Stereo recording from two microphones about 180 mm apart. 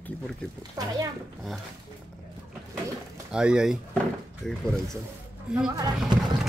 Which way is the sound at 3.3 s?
5° right (ahead or behind).